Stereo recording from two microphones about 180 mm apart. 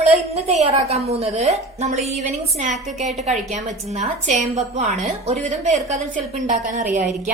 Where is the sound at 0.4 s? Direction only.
35° right (ahead or behind).